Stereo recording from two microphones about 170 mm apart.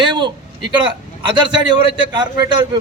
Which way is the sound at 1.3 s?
25° right (ahead or behind).